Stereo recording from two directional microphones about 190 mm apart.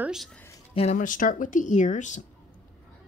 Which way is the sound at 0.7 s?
40° left (ahead or behind).